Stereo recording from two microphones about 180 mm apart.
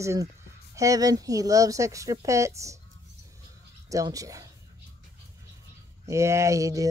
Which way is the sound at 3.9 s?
20° right (ahead or behind).